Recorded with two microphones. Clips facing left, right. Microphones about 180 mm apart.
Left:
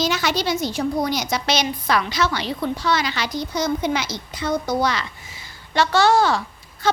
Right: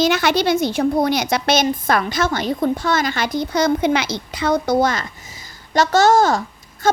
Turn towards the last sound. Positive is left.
turn(degrees=-45)  # may be behind; listen again after turning